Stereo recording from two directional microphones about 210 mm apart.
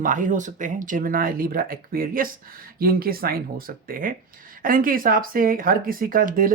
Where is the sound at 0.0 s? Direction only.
40° right (ahead or behind).